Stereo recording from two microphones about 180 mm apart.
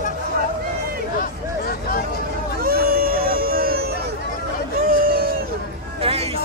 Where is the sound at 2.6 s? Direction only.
55° right (ahead or behind).